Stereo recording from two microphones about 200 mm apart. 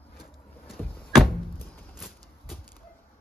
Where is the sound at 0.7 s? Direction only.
Centre (ahead or behind).